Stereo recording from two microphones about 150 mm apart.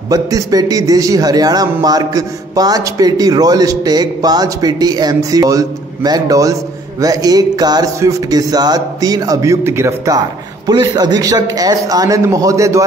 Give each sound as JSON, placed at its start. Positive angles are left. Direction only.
{"t": 0.1, "sound": "a man's voice", "side_deg": -25}